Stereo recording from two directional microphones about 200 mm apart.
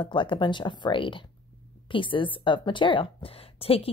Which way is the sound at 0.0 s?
25° left (ahead or behind).